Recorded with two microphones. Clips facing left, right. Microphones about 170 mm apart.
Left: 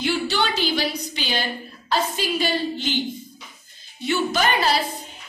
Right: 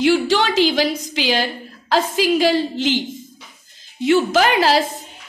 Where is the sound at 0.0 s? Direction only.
90° right.